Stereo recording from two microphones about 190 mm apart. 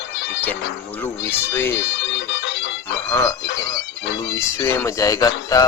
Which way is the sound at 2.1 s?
70° left (ahead or behind).